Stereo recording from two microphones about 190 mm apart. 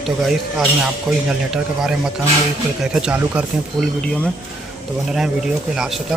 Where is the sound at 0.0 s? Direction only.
Centre (ahead or behind).